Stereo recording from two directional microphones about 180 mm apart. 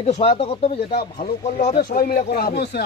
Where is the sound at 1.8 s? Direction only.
55° left (ahead or behind).